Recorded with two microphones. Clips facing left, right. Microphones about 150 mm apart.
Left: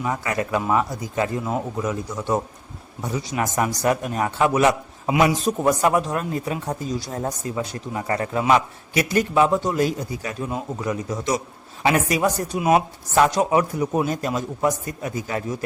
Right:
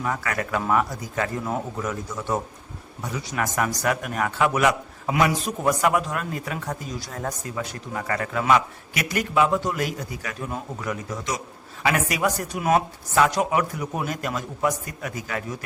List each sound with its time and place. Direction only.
0.0 s speech: 20° left (ahead or behind)
5.1 s speech: 15° left (ahead or behind)
5.8 s speech: 30° left (ahead or behind)